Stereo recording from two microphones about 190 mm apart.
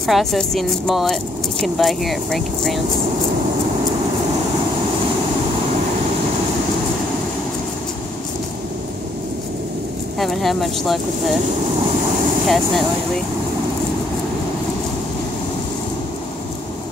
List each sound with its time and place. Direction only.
0.0 s speech: centre (ahead or behind)
10.1 s speech: centre (ahead or behind)
12.4 s speech: centre (ahead or behind)